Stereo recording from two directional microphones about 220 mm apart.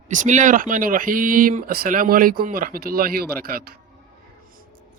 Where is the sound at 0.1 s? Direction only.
35° right (ahead or behind).